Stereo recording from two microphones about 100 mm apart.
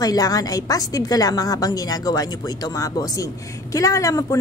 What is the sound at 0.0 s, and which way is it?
A woman's voice, 40° left (ahead or behind).